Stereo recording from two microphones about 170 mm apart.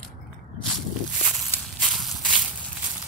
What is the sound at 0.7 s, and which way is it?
Walk, centre (ahead or behind).